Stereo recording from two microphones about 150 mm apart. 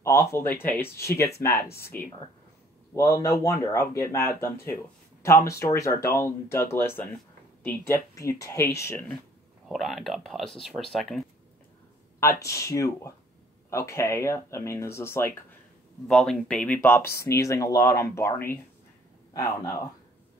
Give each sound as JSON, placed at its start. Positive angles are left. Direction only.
{"t": 0.2, "sound": "speech", "side_deg": 15}
{"t": 2.9, "sound": "speech", "side_deg": 20}
{"t": 9.7, "sound": "speech", "side_deg": 0}
{"t": 12.2, "sound": "speech", "side_deg": 20}
{"t": 16.1, "sound": "speech", "side_deg": 5}